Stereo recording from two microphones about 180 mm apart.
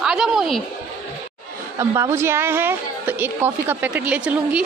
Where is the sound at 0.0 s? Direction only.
5° right (ahead or behind).